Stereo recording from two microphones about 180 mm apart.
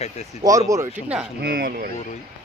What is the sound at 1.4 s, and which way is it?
Speech, 55° right (ahead or behind).